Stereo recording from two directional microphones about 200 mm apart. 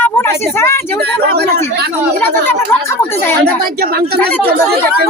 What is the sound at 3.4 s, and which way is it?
Speech, 50° right (ahead or behind).